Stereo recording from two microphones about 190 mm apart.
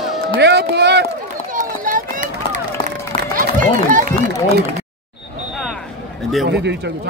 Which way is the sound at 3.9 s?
45° right (ahead or behind).